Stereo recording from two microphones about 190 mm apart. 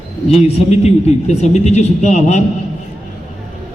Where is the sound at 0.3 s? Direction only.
35° left (ahead or behind).